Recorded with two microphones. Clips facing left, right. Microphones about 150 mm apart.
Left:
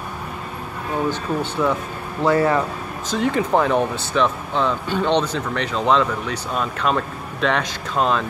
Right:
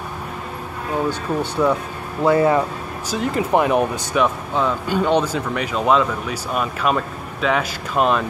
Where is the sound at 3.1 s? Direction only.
5° right (ahead or behind).